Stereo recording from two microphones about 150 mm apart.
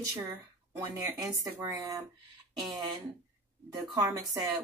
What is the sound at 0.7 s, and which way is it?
Speech, 20° right (ahead or behind).